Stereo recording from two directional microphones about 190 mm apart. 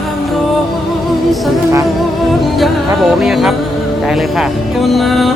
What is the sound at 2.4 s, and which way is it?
Music, centre (ahead or behind).